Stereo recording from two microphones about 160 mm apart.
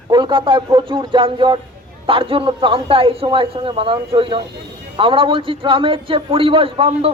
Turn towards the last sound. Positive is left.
turn(degrees=-35)  # may be behind; listen again after turning